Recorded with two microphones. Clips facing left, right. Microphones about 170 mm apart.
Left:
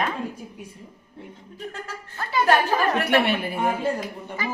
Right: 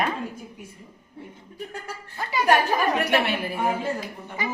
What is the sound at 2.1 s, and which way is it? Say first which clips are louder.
Speech: left 1 dB; 15° right (ahead or behind).